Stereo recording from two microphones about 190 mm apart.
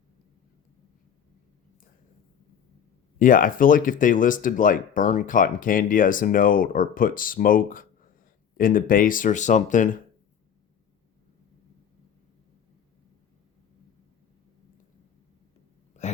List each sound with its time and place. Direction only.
3.2 s speech: 45° left (ahead or behind)